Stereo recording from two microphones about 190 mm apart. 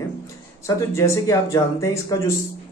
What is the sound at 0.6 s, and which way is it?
A man's voice, 15° left (ahead or behind).